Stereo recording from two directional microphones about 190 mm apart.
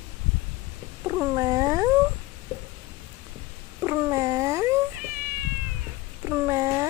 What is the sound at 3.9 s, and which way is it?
Cat, 15° right (ahead or behind).